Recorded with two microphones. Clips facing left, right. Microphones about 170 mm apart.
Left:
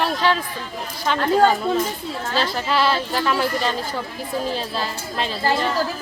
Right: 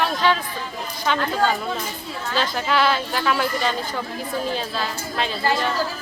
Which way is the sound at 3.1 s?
Centre (ahead or behind).